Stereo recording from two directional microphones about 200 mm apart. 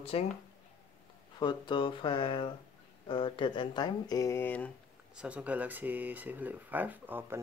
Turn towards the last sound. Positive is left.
turn(degrees=-10)  # may be behind; listen again after turning